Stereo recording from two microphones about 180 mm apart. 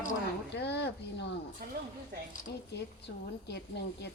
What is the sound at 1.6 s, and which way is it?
Speech, 55° right (ahead or behind).